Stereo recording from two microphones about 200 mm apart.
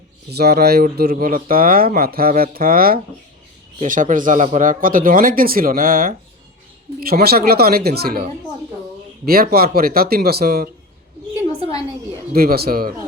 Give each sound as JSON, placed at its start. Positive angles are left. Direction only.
{"t": 0.3, "sound": "speech", "side_deg": -50}
{"t": 12.3, "sound": "speech", "side_deg": -50}